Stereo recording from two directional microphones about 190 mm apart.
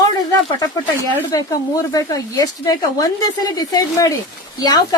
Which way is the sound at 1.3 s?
20° left (ahead or behind).